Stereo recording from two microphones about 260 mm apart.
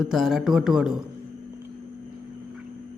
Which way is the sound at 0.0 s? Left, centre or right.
Centre.